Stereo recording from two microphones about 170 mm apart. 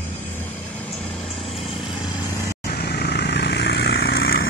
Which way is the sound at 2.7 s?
65° left (ahead or behind).